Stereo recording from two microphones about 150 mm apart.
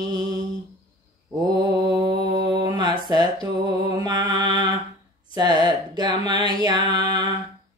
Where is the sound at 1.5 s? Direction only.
30° right (ahead or behind).